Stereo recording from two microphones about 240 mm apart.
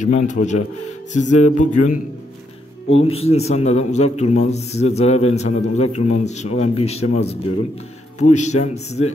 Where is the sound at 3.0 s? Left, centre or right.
Left.